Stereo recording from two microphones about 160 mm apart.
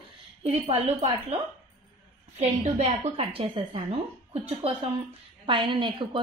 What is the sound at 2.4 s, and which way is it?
A woman's voice, 45° right (ahead or behind).